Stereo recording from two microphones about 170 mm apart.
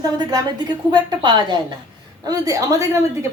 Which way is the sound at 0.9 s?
25° right (ahead or behind).